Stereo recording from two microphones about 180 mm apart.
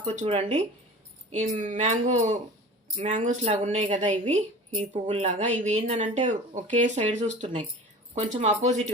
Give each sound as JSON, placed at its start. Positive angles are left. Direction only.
{"t": 0.0, "sound": "a woman's voice", "side_deg": -35}
{"t": 1.4, "sound": "a woman's voice", "side_deg": -45}
{"t": 7.4, "sound": "a woman's voice", "side_deg": -30}